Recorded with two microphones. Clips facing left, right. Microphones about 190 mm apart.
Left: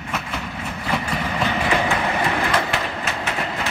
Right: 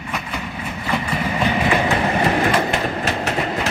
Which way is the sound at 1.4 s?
15° right (ahead or behind).